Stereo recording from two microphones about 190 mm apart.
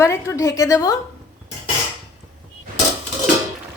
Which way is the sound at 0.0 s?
15° left (ahead or behind).